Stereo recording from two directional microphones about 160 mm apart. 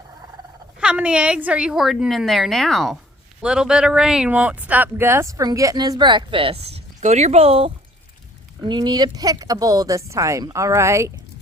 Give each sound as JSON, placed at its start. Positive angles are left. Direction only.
{"t": 0.8, "sound": "a woman's voice", "side_deg": -5}